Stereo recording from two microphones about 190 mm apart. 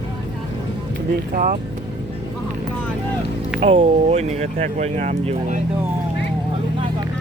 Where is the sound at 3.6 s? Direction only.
35° right (ahead or behind).